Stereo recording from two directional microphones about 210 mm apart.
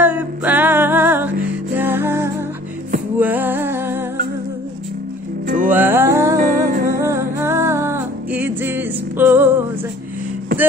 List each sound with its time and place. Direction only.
0.0 s music: 10° right (ahead or behind)
5.7 s music: 10° right (ahead or behind)
6.3 s music: 45° right (ahead or behind)
7.0 s music: 15° right (ahead or behind)